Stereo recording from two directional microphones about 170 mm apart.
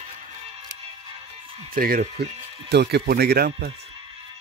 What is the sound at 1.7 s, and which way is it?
Speech, 55° right (ahead or behind).